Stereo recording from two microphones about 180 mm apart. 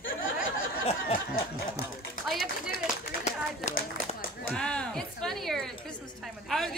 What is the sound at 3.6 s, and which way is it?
Speech, 40° left (ahead or behind).